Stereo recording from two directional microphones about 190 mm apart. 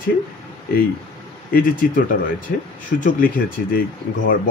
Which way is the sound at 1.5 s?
50° left (ahead or behind).